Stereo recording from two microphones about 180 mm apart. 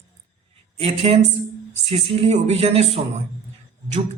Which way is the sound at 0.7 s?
35° right (ahead or behind).